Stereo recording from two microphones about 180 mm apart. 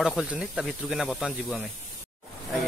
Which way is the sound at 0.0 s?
Centre (ahead or behind).